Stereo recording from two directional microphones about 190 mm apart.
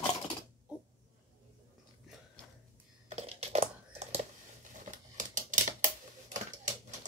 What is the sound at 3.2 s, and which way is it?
Typing, 35° right (ahead or behind).